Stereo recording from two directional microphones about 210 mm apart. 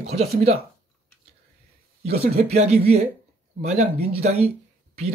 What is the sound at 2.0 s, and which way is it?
Speech, 30° right (ahead or behind).